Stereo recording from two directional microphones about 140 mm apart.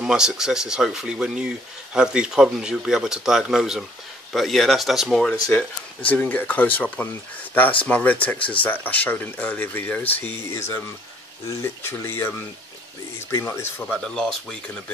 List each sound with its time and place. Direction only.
0.0 s speech: 5° right (ahead or behind); by 13.8 s 15° left (ahead or behind)
13.8 s speech: 5° left (ahead or behind)